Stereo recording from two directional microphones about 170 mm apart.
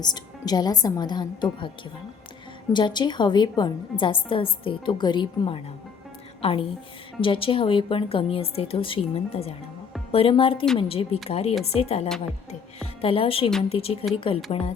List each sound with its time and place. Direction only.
0.0 s a woman's voice: 25° left (ahead or behind)
2.7 s a woman's voice: 25° left (ahead or behind)